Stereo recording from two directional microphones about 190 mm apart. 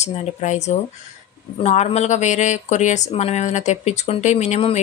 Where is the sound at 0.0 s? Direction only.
35° left (ahead or behind).